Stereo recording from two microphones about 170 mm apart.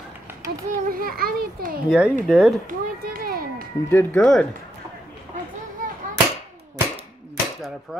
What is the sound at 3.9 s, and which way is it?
Speech, 10° left (ahead or behind).